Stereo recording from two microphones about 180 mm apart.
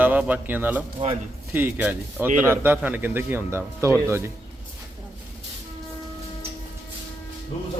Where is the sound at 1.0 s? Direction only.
30° right (ahead or behind).